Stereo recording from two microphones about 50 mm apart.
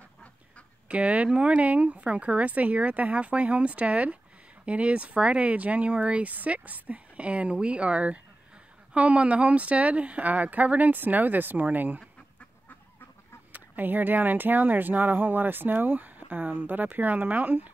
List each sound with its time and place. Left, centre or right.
0.8 s speech: right
13.5 s speech: right